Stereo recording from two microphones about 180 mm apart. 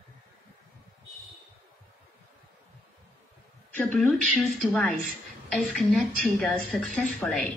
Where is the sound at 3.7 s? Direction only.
5° left (ahead or behind).